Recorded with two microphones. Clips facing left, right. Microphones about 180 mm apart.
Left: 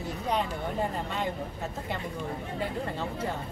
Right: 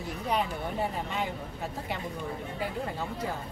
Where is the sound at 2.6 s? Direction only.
10° right (ahead or behind).